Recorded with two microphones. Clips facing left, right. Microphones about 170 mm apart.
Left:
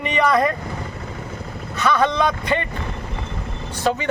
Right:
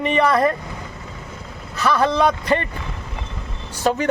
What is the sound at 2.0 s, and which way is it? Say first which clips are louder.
Speech: right 1 dB; 35° right (ahead or behind).